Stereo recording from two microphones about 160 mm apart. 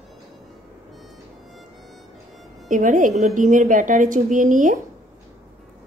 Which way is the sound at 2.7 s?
55° right (ahead or behind).